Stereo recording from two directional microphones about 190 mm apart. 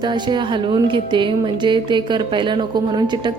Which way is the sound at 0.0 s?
25° right (ahead or behind).